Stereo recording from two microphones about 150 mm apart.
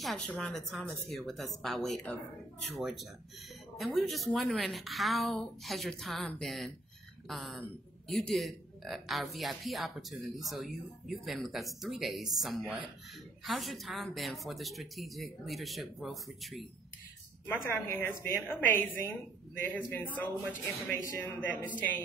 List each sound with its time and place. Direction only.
0.0 s a man's voice: centre (ahead or behind)
17.5 s speech: 15° left (ahead or behind)
19.9 s speech: 10° left (ahead or behind)